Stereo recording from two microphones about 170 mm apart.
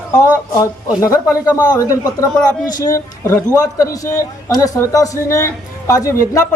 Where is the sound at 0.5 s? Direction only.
20° left (ahead or behind).